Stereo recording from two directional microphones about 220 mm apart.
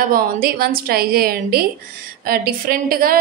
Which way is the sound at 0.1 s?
40° right (ahead or behind).